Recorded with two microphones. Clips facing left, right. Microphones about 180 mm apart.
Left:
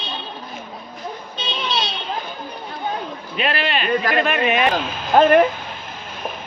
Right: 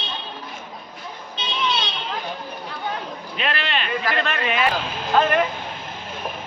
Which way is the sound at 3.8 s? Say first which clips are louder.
Left 8 dB; 45° left (ahead or behind).